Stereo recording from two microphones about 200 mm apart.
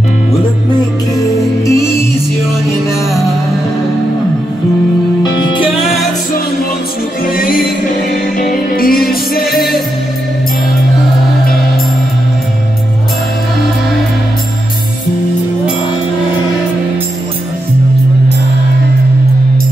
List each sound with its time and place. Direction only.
1.7 s music: 15° left (ahead or behind)
5.2 s music: 25° left (ahead or behind)
5.7 s music: centre (ahead or behind)
7.3 s music: 45° left (ahead or behind)